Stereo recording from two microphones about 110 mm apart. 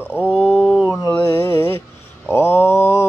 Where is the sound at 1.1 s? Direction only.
25° left (ahead or behind).